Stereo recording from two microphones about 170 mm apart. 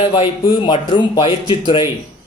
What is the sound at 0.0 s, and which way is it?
Speech, 40° left (ahead or behind).